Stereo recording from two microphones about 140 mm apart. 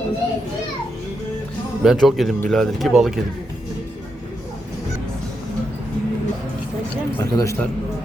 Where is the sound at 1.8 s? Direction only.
Centre (ahead or behind).